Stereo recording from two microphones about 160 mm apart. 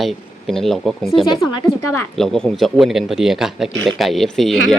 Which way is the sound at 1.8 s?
15° left (ahead or behind).